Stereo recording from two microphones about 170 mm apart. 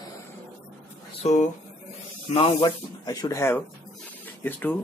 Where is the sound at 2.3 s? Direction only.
30° left (ahead or behind).